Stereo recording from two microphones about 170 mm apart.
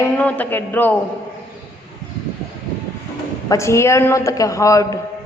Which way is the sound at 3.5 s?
15° left (ahead or behind).